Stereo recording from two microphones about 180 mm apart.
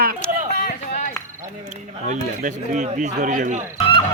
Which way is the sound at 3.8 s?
30° left (ahead or behind).